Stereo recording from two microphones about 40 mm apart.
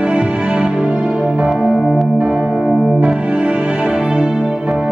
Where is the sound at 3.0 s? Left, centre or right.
Right.